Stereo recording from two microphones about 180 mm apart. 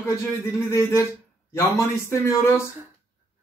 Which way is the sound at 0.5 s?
15° left (ahead or behind).